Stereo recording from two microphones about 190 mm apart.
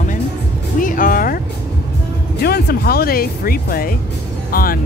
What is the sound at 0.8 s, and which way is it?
Vehicle, 45° left (ahead or behind).